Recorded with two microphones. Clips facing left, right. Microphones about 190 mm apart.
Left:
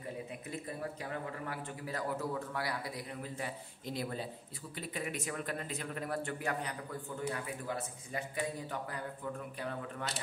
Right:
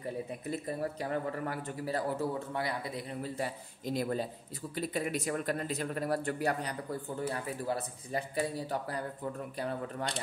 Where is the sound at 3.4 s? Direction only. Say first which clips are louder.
Right 5 dB; 40° right (ahead or behind).